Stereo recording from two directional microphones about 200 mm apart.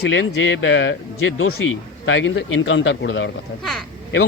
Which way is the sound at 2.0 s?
65° left (ahead or behind).